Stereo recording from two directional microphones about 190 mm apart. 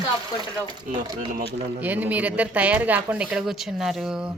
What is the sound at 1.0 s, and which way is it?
Speech, 25° right (ahead or behind).